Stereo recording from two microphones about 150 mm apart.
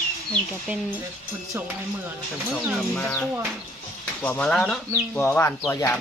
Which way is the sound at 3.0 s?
10° left (ahead or behind).